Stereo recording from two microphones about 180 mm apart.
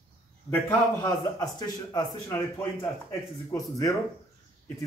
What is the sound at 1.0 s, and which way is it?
A man's voice, 20° left (ahead or behind).